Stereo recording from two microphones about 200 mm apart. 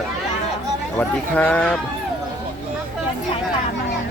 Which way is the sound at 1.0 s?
5° left (ahead or behind).